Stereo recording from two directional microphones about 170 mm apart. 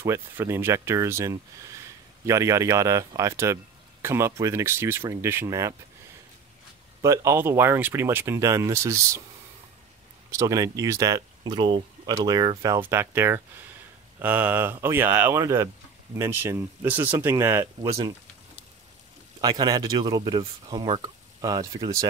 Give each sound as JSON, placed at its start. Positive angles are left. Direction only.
{"t": 0.0, "sound": "speech", "side_deg": -15}
{"t": 7.0, "sound": "speech", "side_deg": -15}
{"t": 10.3, "sound": "speech", "side_deg": -20}
{"t": 19.4, "sound": "speech", "side_deg": -25}